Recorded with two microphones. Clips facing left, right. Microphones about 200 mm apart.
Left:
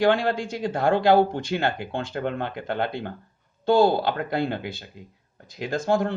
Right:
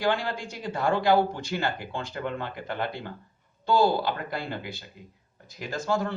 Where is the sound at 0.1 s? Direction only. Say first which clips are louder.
Left 6 dB; 55° left (ahead or behind).